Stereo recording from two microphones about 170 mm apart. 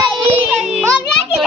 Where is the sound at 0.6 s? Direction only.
5° right (ahead or behind).